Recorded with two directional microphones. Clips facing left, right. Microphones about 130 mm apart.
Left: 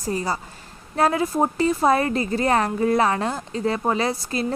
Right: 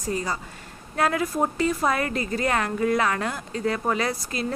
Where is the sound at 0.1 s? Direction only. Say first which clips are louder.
Left 3 dB; 35° left (ahead or behind).